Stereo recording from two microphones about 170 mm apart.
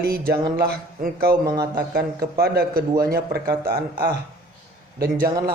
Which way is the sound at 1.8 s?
65° right (ahead or behind).